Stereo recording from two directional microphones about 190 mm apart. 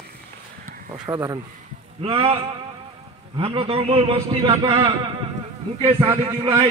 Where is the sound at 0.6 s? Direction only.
45° right (ahead or behind).